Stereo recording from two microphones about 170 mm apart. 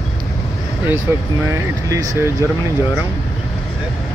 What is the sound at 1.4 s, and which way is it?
Speech, 15° right (ahead or behind).